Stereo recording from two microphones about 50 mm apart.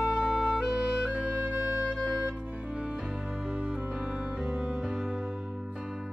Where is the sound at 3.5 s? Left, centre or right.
Centre.